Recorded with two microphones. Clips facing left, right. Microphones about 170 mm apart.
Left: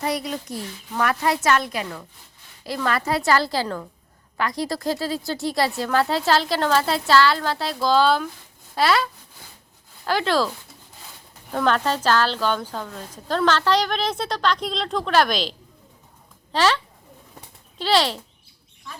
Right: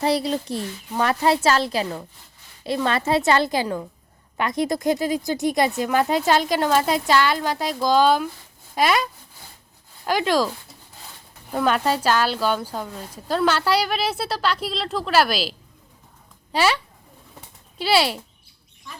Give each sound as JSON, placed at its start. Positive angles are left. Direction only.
{"t": 0.0, "sound": "a child's voice", "side_deg": -30}
{"t": 11.5, "sound": "a woman's voice", "side_deg": -10}